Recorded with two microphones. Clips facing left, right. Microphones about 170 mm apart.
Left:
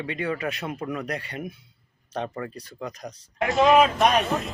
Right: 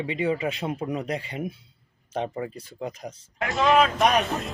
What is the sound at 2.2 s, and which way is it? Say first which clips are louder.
Speech: right 2 dB; 25° right (ahead or behind).